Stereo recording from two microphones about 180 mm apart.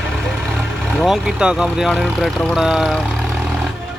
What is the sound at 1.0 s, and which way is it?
Speech, centre (ahead or behind).